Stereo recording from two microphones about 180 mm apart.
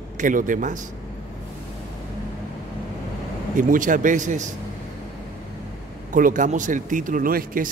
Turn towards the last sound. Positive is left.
turn(degrees=-50)  # may be behind; listen again after turning